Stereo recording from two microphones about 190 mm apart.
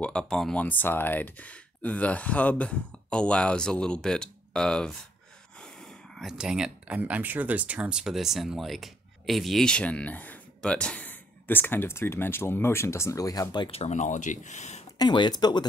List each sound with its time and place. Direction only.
0.0 s speech: 5° left (ahead or behind); by 14.8 s 40° left (ahead or behind)
15.0 s speech: 25° left (ahead or behind)